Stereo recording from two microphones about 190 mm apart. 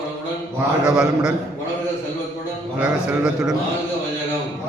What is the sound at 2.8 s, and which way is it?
Speech, 5° right (ahead or behind).